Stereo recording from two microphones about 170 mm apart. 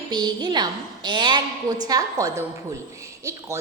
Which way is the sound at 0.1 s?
25° right (ahead or behind).